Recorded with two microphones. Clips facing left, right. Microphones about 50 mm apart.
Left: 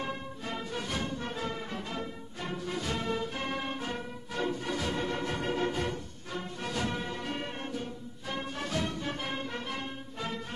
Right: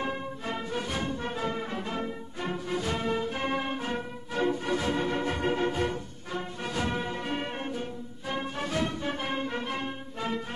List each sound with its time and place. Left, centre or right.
0.0 s music: right